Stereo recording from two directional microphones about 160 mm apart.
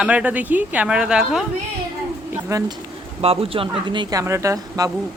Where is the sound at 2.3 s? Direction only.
20° right (ahead or behind).